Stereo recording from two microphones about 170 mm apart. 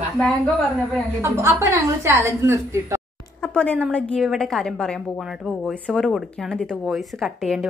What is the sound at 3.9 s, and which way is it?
A woman's voice, 5° left (ahead or behind).